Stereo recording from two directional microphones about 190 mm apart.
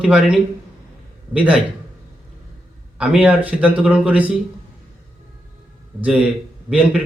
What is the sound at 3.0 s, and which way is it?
A man's voice, 5° right (ahead or behind).